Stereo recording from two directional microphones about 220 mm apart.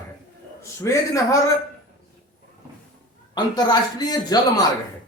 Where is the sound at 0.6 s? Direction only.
15° left (ahead or behind).